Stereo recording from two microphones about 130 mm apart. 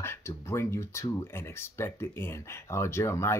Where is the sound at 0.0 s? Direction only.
20° left (ahead or behind).